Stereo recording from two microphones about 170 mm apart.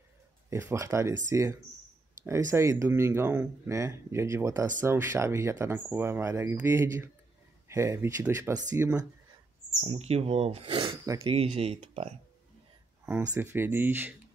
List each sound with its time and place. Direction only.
0.5 s speech: 15° right (ahead or behind)
9.8 s speech: 35° right (ahead or behind)
13.0 s speech: 20° right (ahead or behind)